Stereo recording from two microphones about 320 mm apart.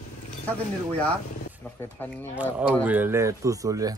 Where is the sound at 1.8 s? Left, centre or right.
Centre.